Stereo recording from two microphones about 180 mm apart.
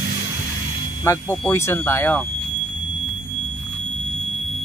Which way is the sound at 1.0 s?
10° left (ahead or behind).